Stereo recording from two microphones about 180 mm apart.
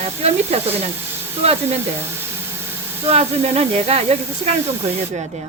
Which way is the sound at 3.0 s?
35° right (ahead or behind).